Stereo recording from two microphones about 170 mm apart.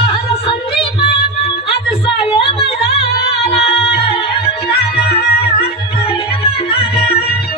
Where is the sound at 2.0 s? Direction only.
35° left (ahead or behind).